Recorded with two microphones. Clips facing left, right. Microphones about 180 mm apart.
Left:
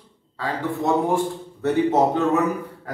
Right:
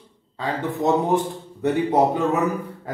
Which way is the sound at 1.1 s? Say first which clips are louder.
Right 1 dB; 15° right (ahead or behind).